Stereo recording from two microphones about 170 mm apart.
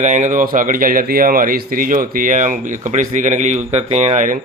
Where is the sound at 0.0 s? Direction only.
45° right (ahead or behind).